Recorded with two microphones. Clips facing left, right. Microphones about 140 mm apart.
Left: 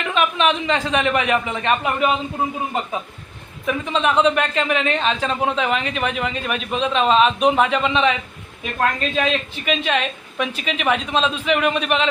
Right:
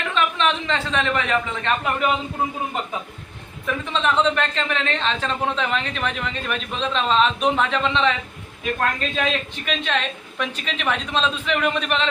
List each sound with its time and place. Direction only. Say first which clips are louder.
0.1 s a woman's voice: left 3 dB; 15° left (ahead or behind)
3.7 s a woman's voice: left 3 dB; 15° left (ahead or behind)